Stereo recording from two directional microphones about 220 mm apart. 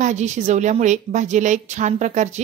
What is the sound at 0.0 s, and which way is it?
Speech, 30° right (ahead or behind).